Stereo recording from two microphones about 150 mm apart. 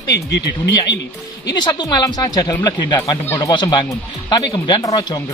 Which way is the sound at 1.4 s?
25° left (ahead or behind).